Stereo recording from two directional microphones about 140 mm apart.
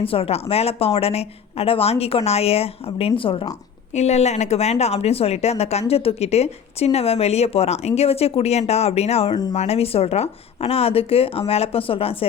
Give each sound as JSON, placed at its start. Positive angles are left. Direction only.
{"t": 0.0, "sound": "speech", "side_deg": 40}
{"t": 3.9, "sound": "speech", "side_deg": 50}
{"t": 9.3, "sound": "speech", "side_deg": 30}
{"t": 9.6, "sound": "speech", "side_deg": 45}